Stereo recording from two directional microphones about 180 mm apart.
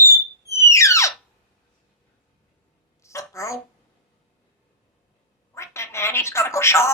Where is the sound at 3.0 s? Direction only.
15° left (ahead or behind).